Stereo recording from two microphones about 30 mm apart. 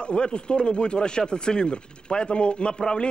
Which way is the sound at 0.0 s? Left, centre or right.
Left.